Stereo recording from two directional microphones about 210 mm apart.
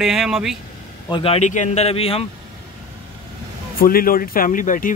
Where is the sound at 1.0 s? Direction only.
25° left (ahead or behind).